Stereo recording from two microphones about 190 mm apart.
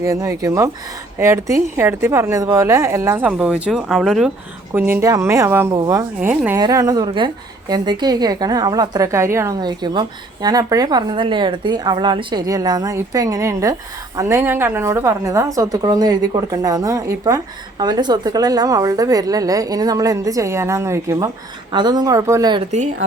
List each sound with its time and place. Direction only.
0.0 s a woman's voice: 15° right (ahead or behind)